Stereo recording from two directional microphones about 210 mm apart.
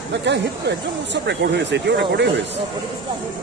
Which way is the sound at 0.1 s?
55° right (ahead or behind).